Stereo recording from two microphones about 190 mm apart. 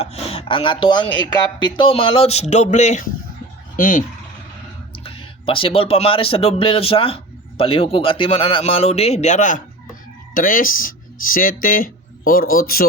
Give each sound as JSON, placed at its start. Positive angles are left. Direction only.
{"t": 0.0, "sound": "speech", "side_deg": 30}
{"t": 1.5, "sound": "a sound", "side_deg": 25}
{"t": 3.8, "sound": "speech", "side_deg": 45}
{"t": 5.0, "sound": "speech", "side_deg": 30}